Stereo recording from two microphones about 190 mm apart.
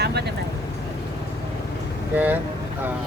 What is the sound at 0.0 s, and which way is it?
Vehicle, 60° right (ahead or behind).